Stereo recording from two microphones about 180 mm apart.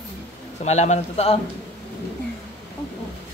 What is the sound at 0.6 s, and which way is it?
Speech, 40° left (ahead or behind).